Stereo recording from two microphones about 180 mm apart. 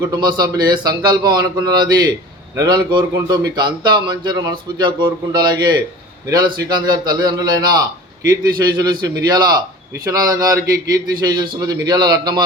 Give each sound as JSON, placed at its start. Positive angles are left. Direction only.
{"t": 0.0, "sound": "speech", "side_deg": -20}